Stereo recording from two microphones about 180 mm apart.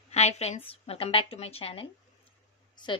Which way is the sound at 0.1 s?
35° left (ahead or behind).